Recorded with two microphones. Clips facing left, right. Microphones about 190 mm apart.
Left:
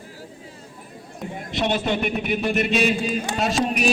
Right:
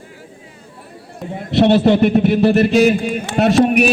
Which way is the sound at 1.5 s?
65° right (ahead or behind).